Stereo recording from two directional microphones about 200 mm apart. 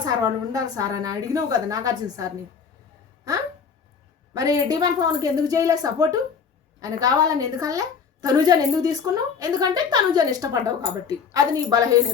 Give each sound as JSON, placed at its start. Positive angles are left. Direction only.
{"t": 0.0, "sound": "a woman's voice", "side_deg": -20}
{"t": 4.4, "sound": "a woman's voice", "side_deg": -20}